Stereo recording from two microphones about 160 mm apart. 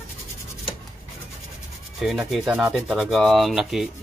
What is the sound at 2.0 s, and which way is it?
Rub, centre (ahead or behind).